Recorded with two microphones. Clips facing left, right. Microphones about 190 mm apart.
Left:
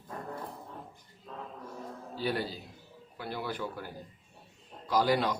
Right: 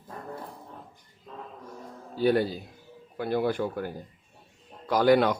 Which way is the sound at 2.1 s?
50° right (ahead or behind).